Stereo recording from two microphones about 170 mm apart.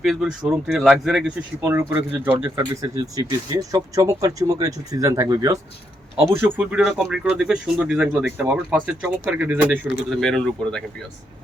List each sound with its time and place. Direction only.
0.0 s speech: centre (ahead or behind); by 5.5 s 20° right (ahead or behind)
6.4 s speech: 10° right (ahead or behind)
10.1 s speech: centre (ahead or behind)